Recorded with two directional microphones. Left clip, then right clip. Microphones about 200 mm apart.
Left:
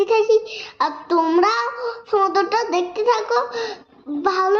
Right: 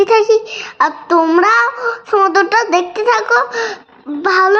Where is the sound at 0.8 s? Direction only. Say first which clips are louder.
Right 7 dB; 20° right (ahead or behind).